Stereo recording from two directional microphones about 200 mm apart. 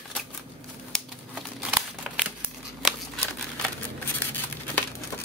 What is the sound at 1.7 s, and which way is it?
Crumpling, 5° right (ahead or behind).